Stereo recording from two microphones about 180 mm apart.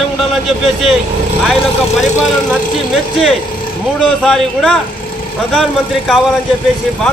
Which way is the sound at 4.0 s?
Centre (ahead or behind).